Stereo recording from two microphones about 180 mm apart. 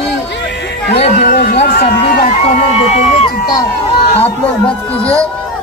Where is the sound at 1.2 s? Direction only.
65° left (ahead or behind).